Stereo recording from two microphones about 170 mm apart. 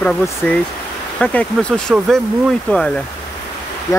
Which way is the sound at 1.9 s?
5° right (ahead or behind).